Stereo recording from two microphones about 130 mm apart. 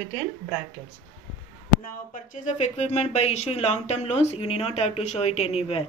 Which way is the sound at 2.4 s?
60° left (ahead or behind).